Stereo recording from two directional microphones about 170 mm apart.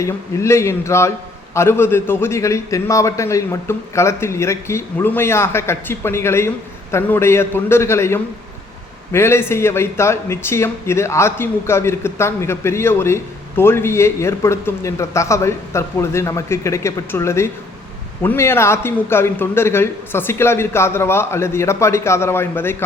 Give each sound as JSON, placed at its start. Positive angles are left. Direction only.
{"t": 0.0, "sound": "speech", "side_deg": 15}